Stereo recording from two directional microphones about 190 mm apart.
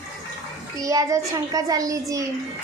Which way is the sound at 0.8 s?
20° right (ahead or behind).